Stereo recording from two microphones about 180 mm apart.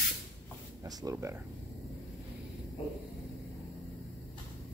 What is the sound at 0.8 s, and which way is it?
Speech, 20° right (ahead or behind).